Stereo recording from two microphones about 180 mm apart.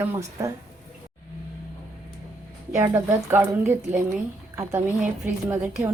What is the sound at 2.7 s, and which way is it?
A woman's voice, 15° right (ahead or behind).